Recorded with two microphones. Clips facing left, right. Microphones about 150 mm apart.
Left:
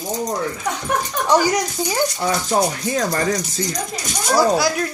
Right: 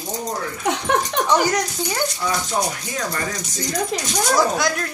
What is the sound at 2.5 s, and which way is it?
Speech, 40° left (ahead or behind).